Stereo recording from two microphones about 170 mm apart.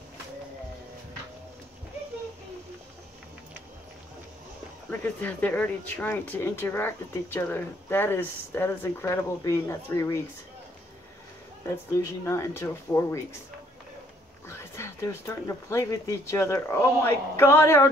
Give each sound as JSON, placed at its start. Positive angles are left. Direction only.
{"t": 5.0, "sound": "speech", "side_deg": 10}
{"t": 11.6, "sound": "speech", "side_deg": 15}
{"t": 14.5, "sound": "speech", "side_deg": 15}